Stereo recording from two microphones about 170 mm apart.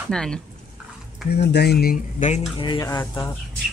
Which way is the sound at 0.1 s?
5° left (ahead or behind).